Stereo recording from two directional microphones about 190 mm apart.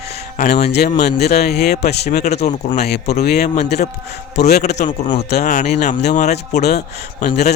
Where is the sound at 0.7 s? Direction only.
60° left (ahead or behind).